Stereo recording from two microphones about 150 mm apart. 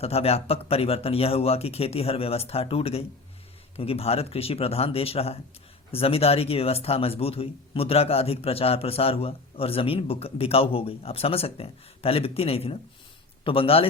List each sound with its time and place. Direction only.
0.0 s speech: 40° left (ahead or behind)